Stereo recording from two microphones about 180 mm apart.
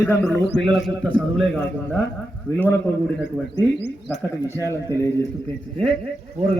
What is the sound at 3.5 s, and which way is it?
Speech, 70° left (ahead or behind).